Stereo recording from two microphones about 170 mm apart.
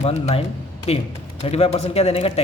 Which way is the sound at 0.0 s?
45° left (ahead or behind).